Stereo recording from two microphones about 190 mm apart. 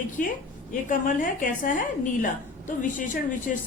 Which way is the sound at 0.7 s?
45° left (ahead or behind).